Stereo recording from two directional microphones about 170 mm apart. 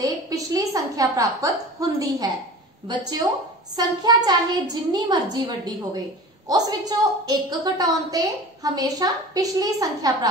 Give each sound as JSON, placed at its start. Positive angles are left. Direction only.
{"t": 0.0, "sound": "a woman's voice", "side_deg": -20}
{"t": 6.5, "sound": "a woman's voice", "side_deg": -25}